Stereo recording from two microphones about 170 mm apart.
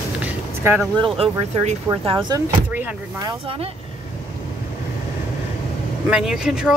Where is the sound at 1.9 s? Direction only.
25° right (ahead or behind).